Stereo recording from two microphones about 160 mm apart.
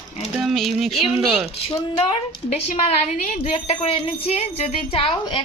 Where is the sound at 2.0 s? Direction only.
35° left (ahead or behind).